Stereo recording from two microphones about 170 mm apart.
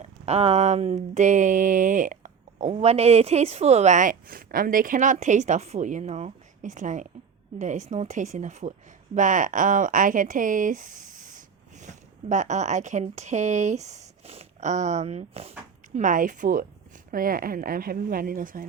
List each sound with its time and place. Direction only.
0.0 s speech: 40° right (ahead or behind)
16.0 s speech: 50° right (ahead or behind)